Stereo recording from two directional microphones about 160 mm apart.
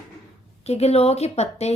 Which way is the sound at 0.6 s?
40° left (ahead or behind).